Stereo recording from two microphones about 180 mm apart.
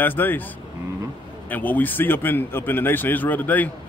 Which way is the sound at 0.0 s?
10° left (ahead or behind).